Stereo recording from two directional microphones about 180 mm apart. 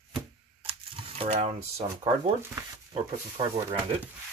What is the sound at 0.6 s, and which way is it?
Camera, 30° right (ahead or behind).